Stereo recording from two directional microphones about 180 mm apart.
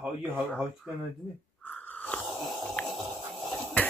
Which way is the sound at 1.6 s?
10° left (ahead or behind).